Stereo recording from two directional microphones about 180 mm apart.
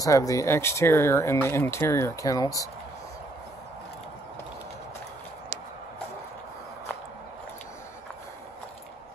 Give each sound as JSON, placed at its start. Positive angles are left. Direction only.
{"t": 0.0, "sound": "speech", "side_deg": 20}